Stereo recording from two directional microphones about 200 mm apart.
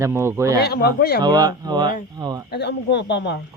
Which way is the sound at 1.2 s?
20° right (ahead or behind).